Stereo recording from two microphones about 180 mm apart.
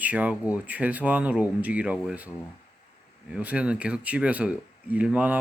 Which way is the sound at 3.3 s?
10° right (ahead or behind).